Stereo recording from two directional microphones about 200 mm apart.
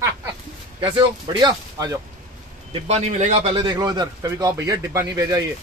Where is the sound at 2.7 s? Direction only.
35° right (ahead or behind).